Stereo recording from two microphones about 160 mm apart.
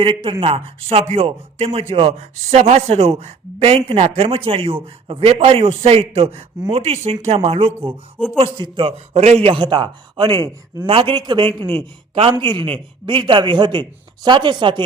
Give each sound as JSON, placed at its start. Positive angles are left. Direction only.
{"t": 0.0, "sound": "speech", "side_deg": -35}
{"t": 8.2, "sound": "speech", "side_deg": 0}
{"t": 8.5, "sound": "a man's voice", "side_deg": -30}